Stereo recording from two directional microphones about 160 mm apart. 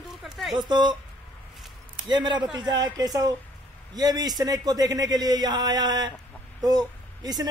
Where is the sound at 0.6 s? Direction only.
30° right (ahead or behind).